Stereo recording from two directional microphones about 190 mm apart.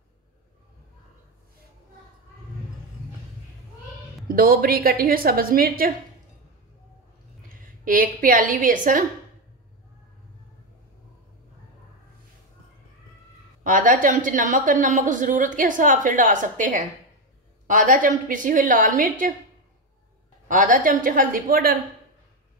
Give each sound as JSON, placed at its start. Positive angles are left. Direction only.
{"t": 4.3, "sound": "a woman's voice", "side_deg": -50}
{"t": 7.8, "sound": "a woman's voice", "side_deg": -45}
{"t": 13.7, "sound": "a woman's voice", "side_deg": -45}
{"t": 20.4, "sound": "a woman's voice", "side_deg": -45}